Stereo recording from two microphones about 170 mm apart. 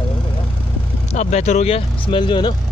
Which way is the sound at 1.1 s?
40° left (ahead or behind).